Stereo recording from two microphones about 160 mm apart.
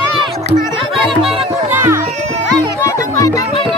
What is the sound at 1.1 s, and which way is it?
Music, centre (ahead or behind).